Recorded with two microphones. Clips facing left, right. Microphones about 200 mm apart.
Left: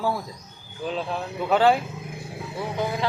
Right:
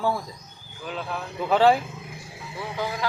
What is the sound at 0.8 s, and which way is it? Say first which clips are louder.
Speech: left 4 dB; 30° left (ahead or behind).